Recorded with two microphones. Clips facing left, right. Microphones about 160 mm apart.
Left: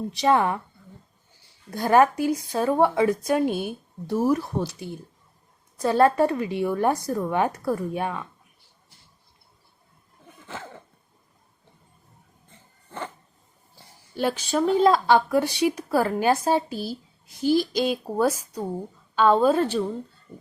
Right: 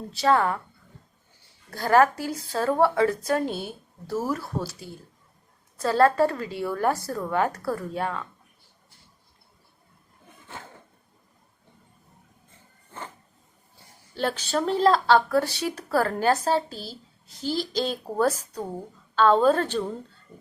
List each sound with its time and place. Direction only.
0.1 s speech: 20° left (ahead or behind)
1.7 s speech: 20° left (ahead or behind)
14.2 s speech: 10° left (ahead or behind)